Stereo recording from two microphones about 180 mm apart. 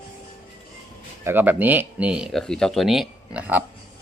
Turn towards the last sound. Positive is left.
turn(degrees=-5)  # may be behind; listen again after turning